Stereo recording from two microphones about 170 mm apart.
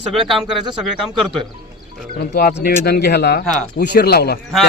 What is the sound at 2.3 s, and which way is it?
Speech, 60° left (ahead or behind).